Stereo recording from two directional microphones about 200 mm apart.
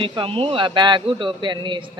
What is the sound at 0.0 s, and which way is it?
A man's voice, 25° right (ahead or behind).